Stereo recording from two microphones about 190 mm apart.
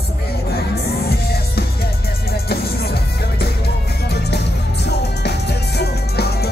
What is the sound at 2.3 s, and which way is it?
Music, 55° left (ahead or behind).